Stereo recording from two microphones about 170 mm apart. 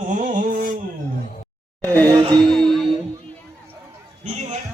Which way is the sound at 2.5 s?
Centre (ahead or behind).